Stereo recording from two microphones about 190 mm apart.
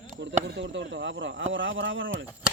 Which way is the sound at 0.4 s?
65° right (ahead or behind).